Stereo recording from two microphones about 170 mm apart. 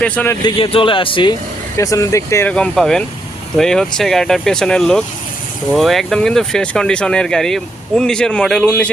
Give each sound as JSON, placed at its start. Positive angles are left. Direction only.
{"t": 0.0, "sound": "speech", "side_deg": 10}
{"t": 0.4, "sound": "speech", "side_deg": 30}